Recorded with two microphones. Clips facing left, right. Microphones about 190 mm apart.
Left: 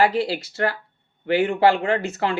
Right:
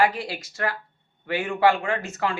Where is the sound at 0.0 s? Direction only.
30° left (ahead or behind).